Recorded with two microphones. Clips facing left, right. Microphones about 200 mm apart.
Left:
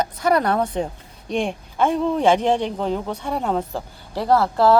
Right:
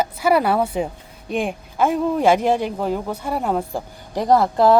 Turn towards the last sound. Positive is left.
turn(degrees=-15)  # may be behind; listen again after turning